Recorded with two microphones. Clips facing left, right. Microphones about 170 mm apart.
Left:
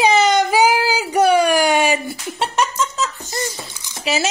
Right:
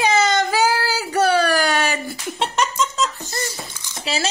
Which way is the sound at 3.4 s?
20° left (ahead or behind).